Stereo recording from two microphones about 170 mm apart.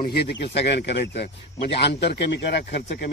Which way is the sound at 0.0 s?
70° left (ahead or behind).